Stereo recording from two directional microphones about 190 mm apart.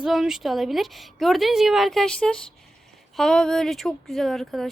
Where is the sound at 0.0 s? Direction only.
Centre (ahead or behind).